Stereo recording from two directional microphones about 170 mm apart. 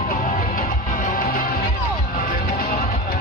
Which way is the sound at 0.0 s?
50° left (ahead or behind).